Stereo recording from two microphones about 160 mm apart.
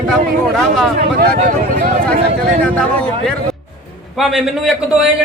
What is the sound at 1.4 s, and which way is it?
Speech, 55° right (ahead or behind).